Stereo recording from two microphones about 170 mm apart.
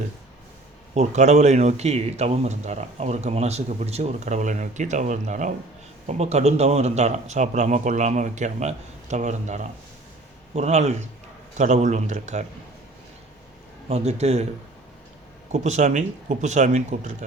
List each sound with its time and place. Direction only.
0.9 s a man's voice: 45° right (ahead or behind)
13.8 s a man's voice: 40° right (ahead or behind)
15.5 s a man's voice: 45° right (ahead or behind)